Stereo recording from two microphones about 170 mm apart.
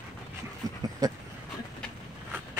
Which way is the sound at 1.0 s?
20° right (ahead or behind).